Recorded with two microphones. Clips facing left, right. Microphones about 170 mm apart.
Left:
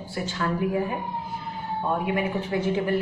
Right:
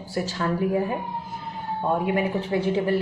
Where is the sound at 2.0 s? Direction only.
35° right (ahead or behind).